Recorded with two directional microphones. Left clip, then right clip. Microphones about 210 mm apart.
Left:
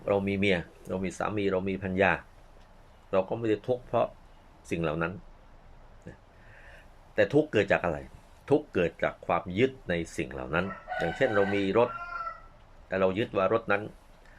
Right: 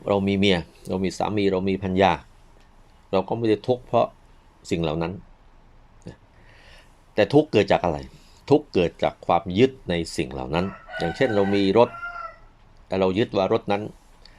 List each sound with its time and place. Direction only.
0.0 s speech: 25° right (ahead or behind)
7.5 s speech: 40° right (ahead or behind)
8.4 s speech: 25° right (ahead or behind)
11.2 s speech: 35° right (ahead or behind)
12.9 s speech: 35° right (ahead or behind)